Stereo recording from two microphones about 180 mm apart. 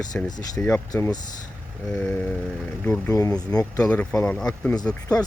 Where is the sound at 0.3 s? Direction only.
20° left (ahead or behind).